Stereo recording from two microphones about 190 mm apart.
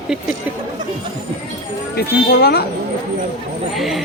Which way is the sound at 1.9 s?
55° left (ahead or behind).